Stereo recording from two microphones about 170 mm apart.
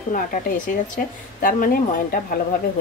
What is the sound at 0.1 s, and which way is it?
Speech, 50° left (ahead or behind).